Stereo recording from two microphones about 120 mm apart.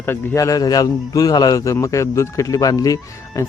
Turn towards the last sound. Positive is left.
turn(degrees=30)  # may be behind; listen again after turning